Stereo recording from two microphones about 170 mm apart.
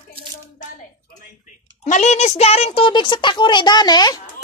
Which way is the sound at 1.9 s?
45° left (ahead or behind).